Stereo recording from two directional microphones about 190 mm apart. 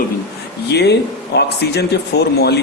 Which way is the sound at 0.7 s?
60° left (ahead or behind).